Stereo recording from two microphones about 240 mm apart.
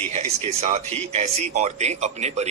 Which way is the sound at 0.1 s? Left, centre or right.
Right.